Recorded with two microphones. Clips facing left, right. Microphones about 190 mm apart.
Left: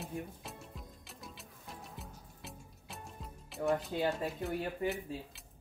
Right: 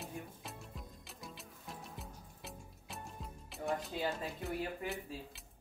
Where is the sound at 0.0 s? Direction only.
Centre (ahead or behind).